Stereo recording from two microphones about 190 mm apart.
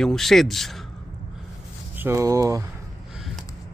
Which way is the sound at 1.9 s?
15° right (ahead or behind).